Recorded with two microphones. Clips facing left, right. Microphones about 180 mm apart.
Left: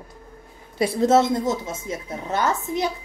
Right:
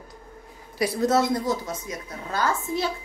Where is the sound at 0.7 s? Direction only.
25° left (ahead or behind).